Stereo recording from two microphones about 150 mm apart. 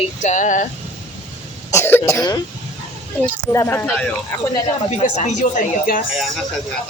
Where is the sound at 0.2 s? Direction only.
55° left (ahead or behind).